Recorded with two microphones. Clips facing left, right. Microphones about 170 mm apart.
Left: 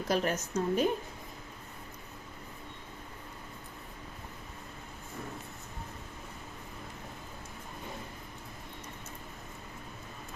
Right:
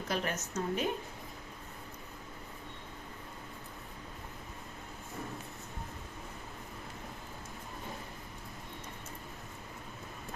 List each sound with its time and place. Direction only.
0.1 s a woman's voice: 40° left (ahead or behind)